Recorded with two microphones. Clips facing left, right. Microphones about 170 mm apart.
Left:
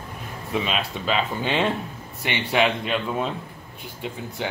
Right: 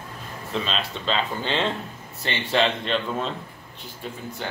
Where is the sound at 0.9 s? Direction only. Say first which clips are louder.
Left 1 dB; 15° left (ahead or behind).